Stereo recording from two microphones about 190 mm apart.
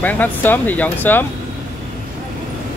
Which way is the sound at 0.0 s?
10° left (ahead or behind).